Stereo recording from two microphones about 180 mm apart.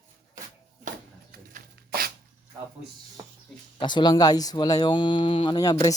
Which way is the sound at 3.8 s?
25° left (ahead or behind).